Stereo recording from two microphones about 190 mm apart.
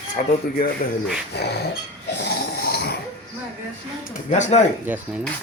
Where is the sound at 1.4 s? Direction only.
60° left (ahead or behind).